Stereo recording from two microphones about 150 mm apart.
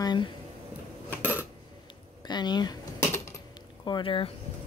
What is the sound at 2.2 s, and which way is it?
Cutlery, 30° left (ahead or behind).